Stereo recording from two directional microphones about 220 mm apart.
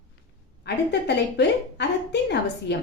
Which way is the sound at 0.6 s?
50° left (ahead or behind).